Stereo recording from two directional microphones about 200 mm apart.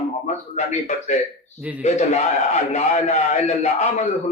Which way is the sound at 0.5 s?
35° left (ahead or behind).